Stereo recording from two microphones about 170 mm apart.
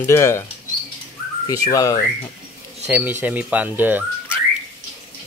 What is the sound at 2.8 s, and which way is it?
Speech, 10° right (ahead or behind).